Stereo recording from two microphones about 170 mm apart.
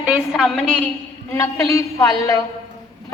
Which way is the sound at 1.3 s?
15° left (ahead or behind).